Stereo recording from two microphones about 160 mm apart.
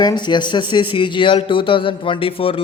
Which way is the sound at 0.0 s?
25° left (ahead or behind).